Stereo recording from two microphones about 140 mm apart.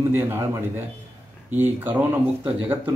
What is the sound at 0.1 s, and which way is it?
Speech, 15° right (ahead or behind).